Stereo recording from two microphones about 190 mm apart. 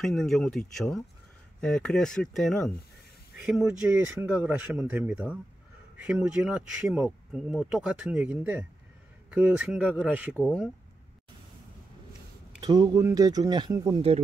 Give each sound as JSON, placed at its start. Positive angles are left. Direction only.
{"t": 0.0, "sound": "speech", "side_deg": 0}
{"t": 4.2, "sound": "speech", "side_deg": -10}
{"t": 10.3, "sound": "speech", "side_deg": 5}
{"t": 12.5, "sound": "speech", "side_deg": -20}